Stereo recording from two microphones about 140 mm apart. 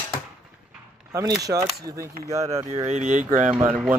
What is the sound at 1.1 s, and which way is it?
Speech, 25° right (ahead or behind).